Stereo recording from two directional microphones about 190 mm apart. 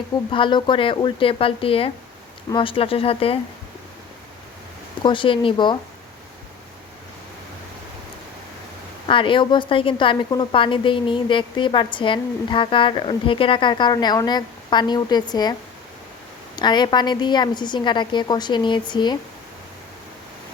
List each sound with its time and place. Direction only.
0.3 s a woman's voice: 25° left (ahead or behind)
5.0 s a woman's voice: 25° left (ahead or behind)
9.0 s a woman's voice: 25° left (ahead or behind)
16.6 s a woman's voice: 25° left (ahead or behind)